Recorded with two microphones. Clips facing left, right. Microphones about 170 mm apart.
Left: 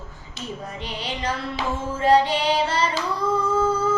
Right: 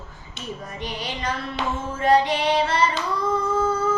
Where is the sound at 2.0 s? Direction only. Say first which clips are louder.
Left 1 dB; 30° left (ahead or behind).